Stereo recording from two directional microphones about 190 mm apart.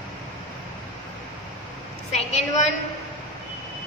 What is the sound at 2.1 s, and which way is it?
Speech, 35° left (ahead or behind).